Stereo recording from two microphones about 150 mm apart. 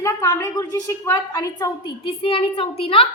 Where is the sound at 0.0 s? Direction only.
20° left (ahead or behind).